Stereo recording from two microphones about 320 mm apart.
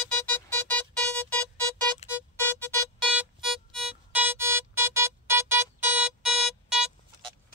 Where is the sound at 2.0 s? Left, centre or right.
Centre.